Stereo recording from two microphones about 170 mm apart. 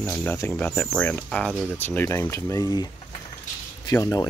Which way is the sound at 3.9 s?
20° left (ahead or behind).